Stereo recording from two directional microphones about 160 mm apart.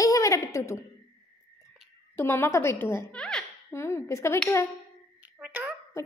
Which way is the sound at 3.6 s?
15° left (ahead or behind).